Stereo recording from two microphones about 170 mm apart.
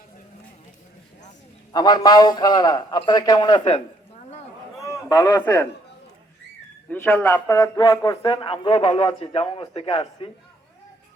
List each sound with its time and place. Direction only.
1.7 s a man's voice: 25° left (ahead or behind)
5.0 s a man's voice: 20° left (ahead or behind)
6.9 s a man's voice: 15° left (ahead or behind); by 10.2 s 30° left (ahead or behind)